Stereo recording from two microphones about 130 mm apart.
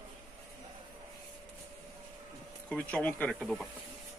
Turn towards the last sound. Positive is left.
turn(degrees=10)  # may be behind; listen again after turning